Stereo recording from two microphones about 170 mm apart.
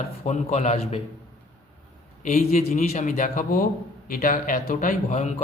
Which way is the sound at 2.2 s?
40° left (ahead or behind).